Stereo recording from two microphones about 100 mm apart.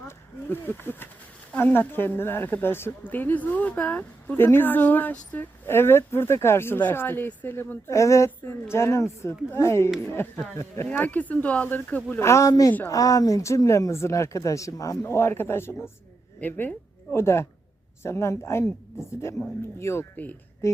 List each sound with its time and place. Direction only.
0.4 s speech: 20° left (ahead or behind)
11.0 s speech: 15° left (ahead or behind); by 14.9 s 35° left (ahead or behind)
15.0 s a woman's voice: 25° left (ahead or behind)
19.8 s speech: 25° left (ahead or behind)